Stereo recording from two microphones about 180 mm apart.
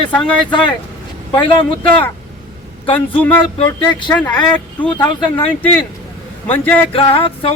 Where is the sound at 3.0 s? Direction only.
10° left (ahead or behind).